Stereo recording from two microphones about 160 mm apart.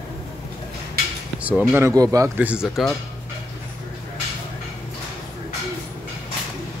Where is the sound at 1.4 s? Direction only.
10° right (ahead or behind).